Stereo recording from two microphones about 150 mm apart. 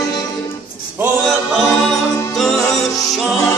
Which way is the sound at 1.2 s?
Centre (ahead or behind).